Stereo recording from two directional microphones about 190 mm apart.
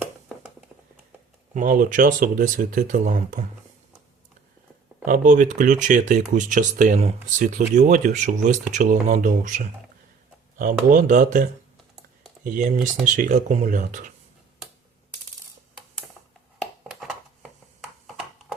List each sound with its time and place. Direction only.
1.5 s speech: 45° right (ahead or behind)
5.0 s speech: 45° right (ahead or behind)
12.5 s speech: 40° right (ahead or behind)
16.9 s a sound: centre (ahead or behind)